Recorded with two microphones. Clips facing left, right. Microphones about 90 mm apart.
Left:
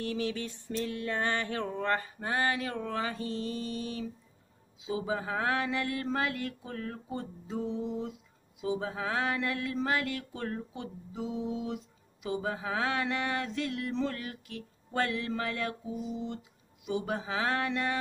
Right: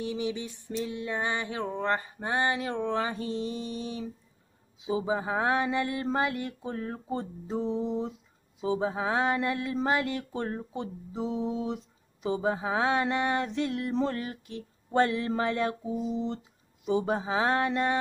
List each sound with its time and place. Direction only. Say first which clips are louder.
0.0 s speech: right 1 dB; 15° right (ahead or behind)